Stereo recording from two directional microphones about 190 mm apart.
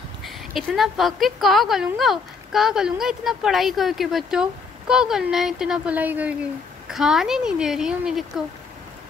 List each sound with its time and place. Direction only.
0.2 s a woman's voice: centre (ahead or behind)